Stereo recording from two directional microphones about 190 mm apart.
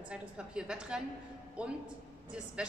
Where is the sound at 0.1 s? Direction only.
5° right (ahead or behind).